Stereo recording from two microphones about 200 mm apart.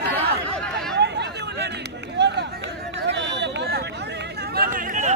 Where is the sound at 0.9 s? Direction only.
60° right (ahead or behind).